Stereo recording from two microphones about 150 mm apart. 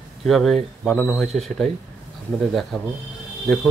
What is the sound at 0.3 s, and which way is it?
Speech, centre (ahead or behind).